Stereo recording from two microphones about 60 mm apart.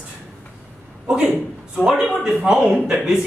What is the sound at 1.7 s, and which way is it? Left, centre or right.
Speech, centre.